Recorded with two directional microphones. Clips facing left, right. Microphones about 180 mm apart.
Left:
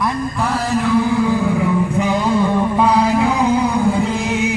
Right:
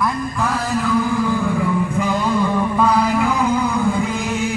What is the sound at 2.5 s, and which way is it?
Music, 30° left (ahead or behind).